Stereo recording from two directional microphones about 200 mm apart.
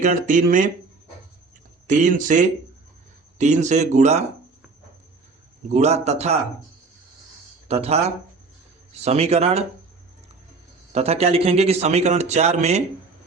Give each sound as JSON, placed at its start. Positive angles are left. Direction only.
{"t": 0.0, "sound": "speech", "side_deg": -40}
{"t": 1.9, "sound": "speech", "side_deg": -40}
{"t": 5.7, "sound": "speech", "side_deg": -35}
{"t": 7.7, "sound": "speech", "side_deg": -30}
{"t": 10.9, "sound": "speech", "side_deg": -30}